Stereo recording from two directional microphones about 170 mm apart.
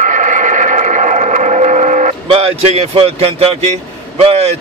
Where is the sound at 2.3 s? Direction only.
35° right (ahead or behind).